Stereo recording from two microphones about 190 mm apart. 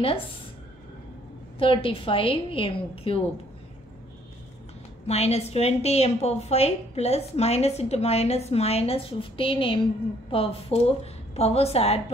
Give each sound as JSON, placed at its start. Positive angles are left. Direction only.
{"t": 1.6, "sound": "a woman's voice", "side_deg": 30}
{"t": 5.0, "sound": "a woman's voice", "side_deg": 35}